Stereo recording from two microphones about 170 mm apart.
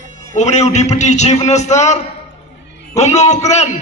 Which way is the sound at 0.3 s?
40° left (ahead or behind).